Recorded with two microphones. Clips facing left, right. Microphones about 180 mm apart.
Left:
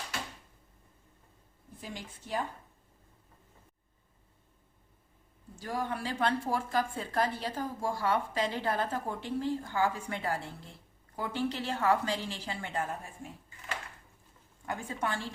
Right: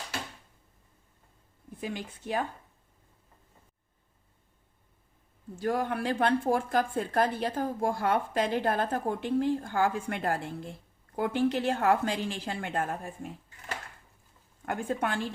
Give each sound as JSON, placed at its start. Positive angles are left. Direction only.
{"t": 1.8, "sound": "a woman's voice", "side_deg": -60}
{"t": 5.5, "sound": "a woman's voice", "side_deg": -55}
{"t": 14.7, "sound": "a woman's voice", "side_deg": -55}